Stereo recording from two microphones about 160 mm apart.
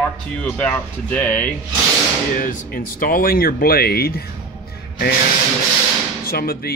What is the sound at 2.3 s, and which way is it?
Speech, 60° left (ahead or behind).